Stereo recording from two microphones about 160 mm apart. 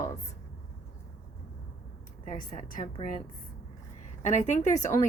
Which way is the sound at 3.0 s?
30° left (ahead or behind).